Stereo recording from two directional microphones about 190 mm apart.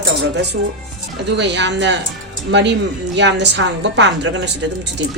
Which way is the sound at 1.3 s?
65° right (ahead or behind).